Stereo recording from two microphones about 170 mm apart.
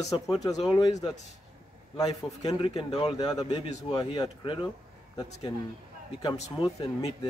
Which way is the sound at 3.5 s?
40° left (ahead or behind).